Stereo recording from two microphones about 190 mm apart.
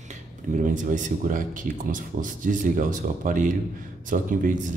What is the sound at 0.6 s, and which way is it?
Speech, 40° right (ahead or behind).